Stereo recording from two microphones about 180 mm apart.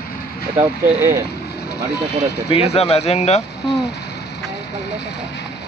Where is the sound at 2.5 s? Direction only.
35° left (ahead or behind).